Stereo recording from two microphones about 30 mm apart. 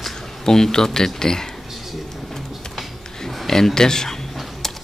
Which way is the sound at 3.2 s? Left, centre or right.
Centre.